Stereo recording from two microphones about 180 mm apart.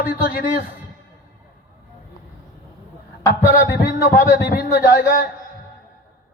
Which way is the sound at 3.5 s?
55° left (ahead or behind).